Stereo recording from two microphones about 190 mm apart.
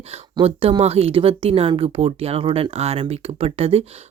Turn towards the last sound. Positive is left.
turn(degrees=-30)  # may be behind; listen again after turning